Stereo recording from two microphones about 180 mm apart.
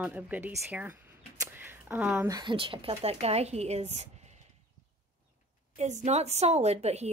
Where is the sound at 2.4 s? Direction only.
30° right (ahead or behind).